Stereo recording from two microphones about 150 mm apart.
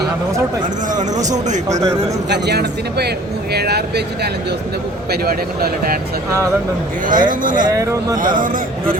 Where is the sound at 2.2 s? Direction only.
90° right.